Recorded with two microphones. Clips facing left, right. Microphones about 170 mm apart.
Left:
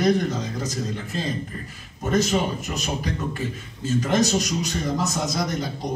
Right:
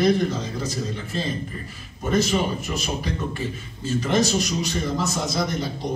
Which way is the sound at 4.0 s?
45° left (ahead or behind).